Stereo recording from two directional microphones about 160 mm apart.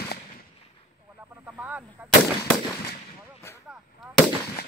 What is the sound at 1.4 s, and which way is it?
Snake, 10° right (ahead or behind).